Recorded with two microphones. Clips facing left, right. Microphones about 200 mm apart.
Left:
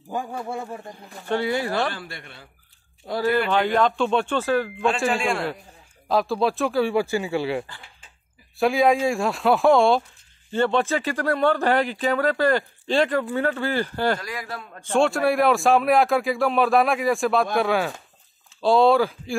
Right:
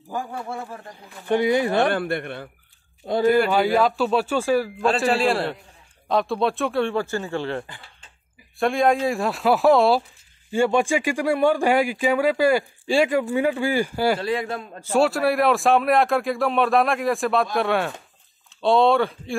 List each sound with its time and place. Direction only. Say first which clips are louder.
0.1 s speech: left 1 dB; 20° left (ahead or behind)
1.3 s a man's voice: right 4 dB; 15° right (ahead or behind)
1.9 s a man's voice: right 10 dB; 60° right (ahead or behind)
3.4 s speech: right 1 dB; 10° right (ahead or behind)
5.1 s a man's voice: right 4 dB; 35° right (ahead or behind)
6.0 s speech: even; centre (ahead or behind)
14.2 s a man's voice: right 8 dB; 25° right (ahead or behind)
14.8 s speech: even; 5° right (ahead or behind)